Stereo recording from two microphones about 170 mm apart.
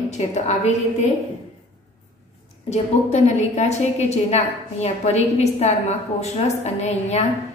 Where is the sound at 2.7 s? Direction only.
40° left (ahead or behind).